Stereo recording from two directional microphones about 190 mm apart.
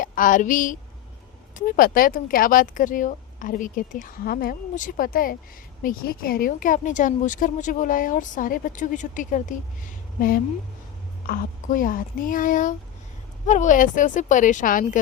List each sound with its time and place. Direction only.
0.0 s speech: 45° left (ahead or behind)